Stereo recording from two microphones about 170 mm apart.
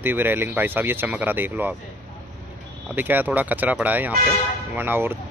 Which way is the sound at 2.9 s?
10° right (ahead or behind).